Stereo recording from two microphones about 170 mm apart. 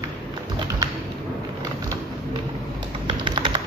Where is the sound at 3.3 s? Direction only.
25° right (ahead or behind).